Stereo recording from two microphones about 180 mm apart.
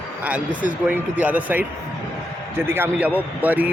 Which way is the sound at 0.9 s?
10° right (ahead or behind).